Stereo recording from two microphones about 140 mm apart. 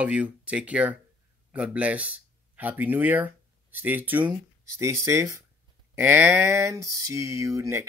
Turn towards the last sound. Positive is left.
turn(degrees=-20)  # may be behind; listen again after turning